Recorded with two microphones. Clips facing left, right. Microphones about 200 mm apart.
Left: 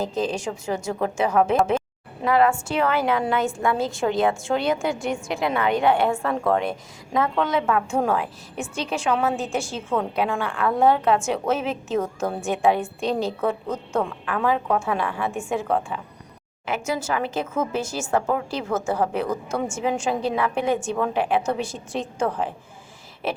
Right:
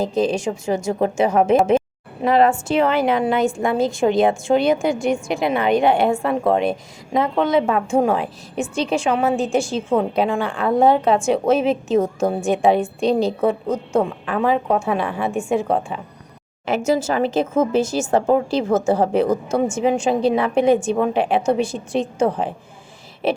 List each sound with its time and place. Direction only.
0.0 s a woman's voice: 10° right (ahead or behind)
0.9 s a woman's voice: 25° right (ahead or behind)
14.0 s a woman's voice: 25° right (ahead or behind)
15.6 s a woman's voice: 25° right (ahead or behind)
16.9 s a woman's voice: 35° right (ahead or behind)
19.6 s a woman's voice: 20° right (ahead or behind)